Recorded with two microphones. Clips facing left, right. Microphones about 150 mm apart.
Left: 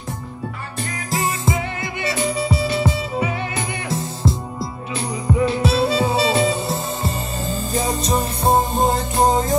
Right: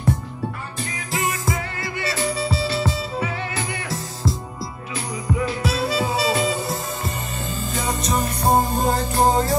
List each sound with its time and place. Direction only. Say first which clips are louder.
1.1 s music: left 3 dB; 30° left (ahead or behind)
5.4 s music: left 7 dB; 25° left (ahead or behind)